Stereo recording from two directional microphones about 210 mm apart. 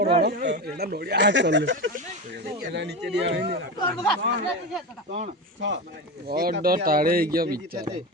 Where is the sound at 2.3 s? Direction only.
45° right (ahead or behind).